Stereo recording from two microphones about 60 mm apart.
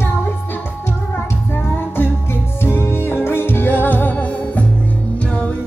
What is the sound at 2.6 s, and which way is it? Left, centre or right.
Music, left.